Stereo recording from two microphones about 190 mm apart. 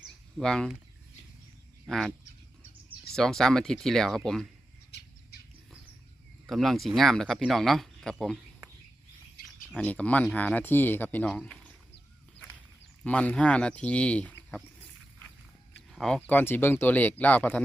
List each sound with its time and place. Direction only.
0.0 s a sound: centre (ahead or behind)
1.9 s speech: centre (ahead or behind)
3.2 s speech: centre (ahead or behind)
4.9 s bird: 60° left (ahead or behind)
6.5 s speech: centre (ahead or behind)
9.7 s speech: 5° left (ahead or behind)
13.1 s speech: 5° left (ahead or behind)
16.0 s speech: 5° left (ahead or behind)